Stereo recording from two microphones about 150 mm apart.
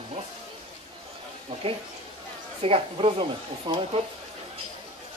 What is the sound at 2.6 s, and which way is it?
Speech, 40° right (ahead or behind).